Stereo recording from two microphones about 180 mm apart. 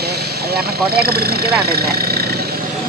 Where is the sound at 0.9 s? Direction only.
60° right (ahead or behind).